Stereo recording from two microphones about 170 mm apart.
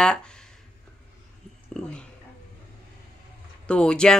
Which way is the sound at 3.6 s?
5° left (ahead or behind).